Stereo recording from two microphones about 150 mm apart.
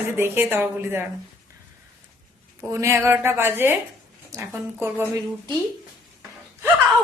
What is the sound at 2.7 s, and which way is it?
A woman's voice, 20° right (ahead or behind).